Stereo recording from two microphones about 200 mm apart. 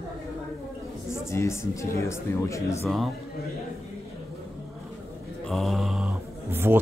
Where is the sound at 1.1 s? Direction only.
15° left (ahead or behind).